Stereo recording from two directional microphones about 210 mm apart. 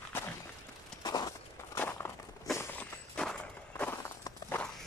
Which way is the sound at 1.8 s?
10° left (ahead or behind).